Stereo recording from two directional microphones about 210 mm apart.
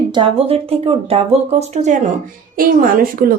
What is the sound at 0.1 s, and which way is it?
Speech, 25° right (ahead or behind).